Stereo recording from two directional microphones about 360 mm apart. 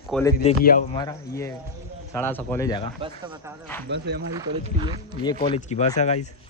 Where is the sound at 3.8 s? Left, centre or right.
Right.